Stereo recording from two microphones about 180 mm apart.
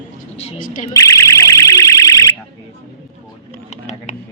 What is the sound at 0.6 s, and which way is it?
Speech, 45° left (ahead or behind).